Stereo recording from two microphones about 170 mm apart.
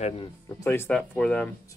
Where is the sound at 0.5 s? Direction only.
15° left (ahead or behind).